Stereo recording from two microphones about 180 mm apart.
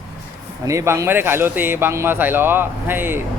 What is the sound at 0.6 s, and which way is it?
Speech, 15° right (ahead or behind).